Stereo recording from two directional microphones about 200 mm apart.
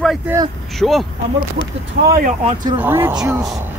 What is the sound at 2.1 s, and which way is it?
Speech, 45° right (ahead or behind).